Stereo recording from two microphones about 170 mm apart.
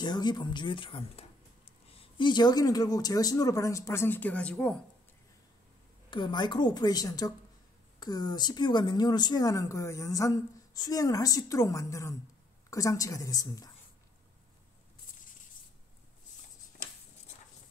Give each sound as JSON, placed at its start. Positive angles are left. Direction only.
{"t": 0.0, "sound": "a woman's voice", "side_deg": 25}
{"t": 6.0, "sound": "a woman's voice", "side_deg": 25}